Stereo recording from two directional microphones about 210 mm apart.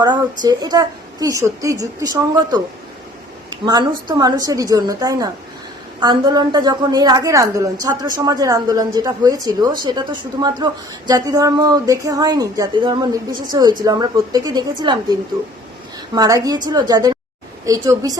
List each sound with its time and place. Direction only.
0.0 s a woman's voice: 20° right (ahead or behind)
3.7 s a woman's voice: 20° right (ahead or behind)
16.1 s a woman's voice: 15° right (ahead or behind)